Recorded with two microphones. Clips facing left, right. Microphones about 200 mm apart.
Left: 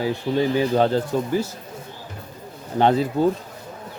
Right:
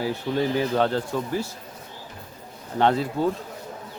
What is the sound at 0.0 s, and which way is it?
Speech, 20° left (ahead or behind).